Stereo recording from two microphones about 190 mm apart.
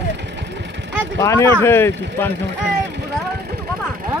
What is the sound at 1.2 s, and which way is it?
Speech, 15° left (ahead or behind).